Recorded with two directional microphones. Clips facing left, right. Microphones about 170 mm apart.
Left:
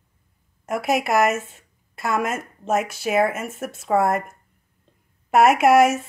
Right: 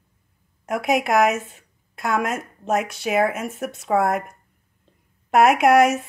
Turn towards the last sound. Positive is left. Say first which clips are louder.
# even
turn(degrees=0)  # may be behind; listen again after turning